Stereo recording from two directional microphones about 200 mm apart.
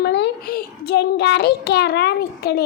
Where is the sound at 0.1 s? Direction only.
55° left (ahead or behind).